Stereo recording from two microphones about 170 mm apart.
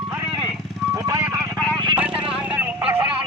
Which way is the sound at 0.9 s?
20° right (ahead or behind).